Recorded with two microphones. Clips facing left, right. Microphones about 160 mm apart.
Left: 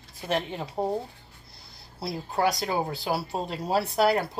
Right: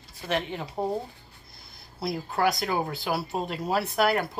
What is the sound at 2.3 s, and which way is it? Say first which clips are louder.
Speech: left 1 dB; 25° left (ahead or behind).